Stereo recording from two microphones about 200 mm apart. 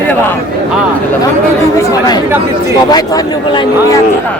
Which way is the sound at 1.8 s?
20° left (ahead or behind).